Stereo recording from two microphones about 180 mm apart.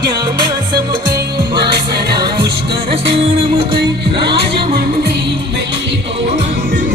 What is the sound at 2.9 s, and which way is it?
Music, 30° right (ahead or behind).